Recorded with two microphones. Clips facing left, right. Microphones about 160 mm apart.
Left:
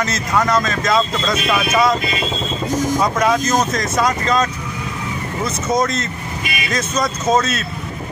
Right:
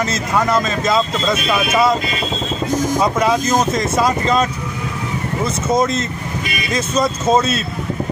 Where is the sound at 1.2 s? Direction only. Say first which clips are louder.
Right 1 dB; 5° right (ahead or behind).